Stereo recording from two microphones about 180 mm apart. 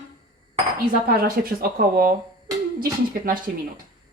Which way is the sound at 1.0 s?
55° right (ahead or behind).